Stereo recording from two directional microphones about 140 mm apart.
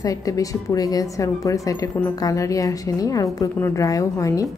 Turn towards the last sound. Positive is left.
turn(degrees=25)  # may be behind; listen again after turning